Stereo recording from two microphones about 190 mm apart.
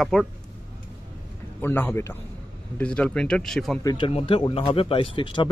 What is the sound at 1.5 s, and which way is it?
A man's voice, 10° left (ahead or behind).